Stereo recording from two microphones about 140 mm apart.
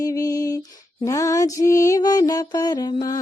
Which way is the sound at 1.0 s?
20° left (ahead or behind).